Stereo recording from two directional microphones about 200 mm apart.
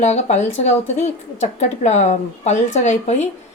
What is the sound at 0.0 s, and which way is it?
Speech, 35° left (ahead or behind).